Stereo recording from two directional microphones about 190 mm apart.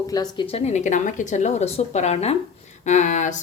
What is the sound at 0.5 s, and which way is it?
Speech, 35° left (ahead or behind).